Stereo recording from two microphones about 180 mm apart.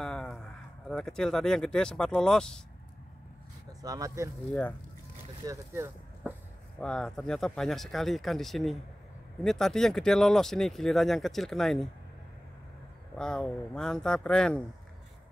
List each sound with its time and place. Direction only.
0.0 s a sound: 5° left (ahead or behind)
0.8 s speech: 5° left (ahead or behind)
3.8 s speech: 20° right (ahead or behind)
5.4 s speech: 15° right (ahead or behind)
6.8 s speech: 5° left (ahead or behind)
13.2 s speech: 5° left (ahead or behind)